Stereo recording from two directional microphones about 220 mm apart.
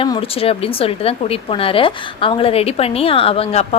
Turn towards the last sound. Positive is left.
turn(degrees=25)  # may be behind; listen again after turning